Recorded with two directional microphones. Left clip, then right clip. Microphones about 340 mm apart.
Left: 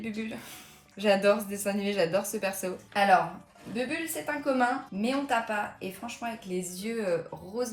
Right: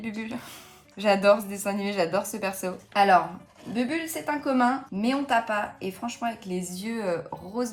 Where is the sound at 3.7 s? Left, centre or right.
Right.